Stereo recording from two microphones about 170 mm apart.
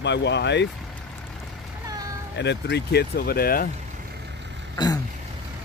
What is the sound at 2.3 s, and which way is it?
Speech, 90° left.